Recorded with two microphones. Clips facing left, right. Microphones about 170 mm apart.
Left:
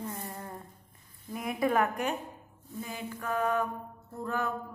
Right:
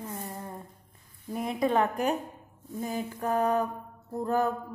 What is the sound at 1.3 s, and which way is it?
Speech, 30° right (ahead or behind).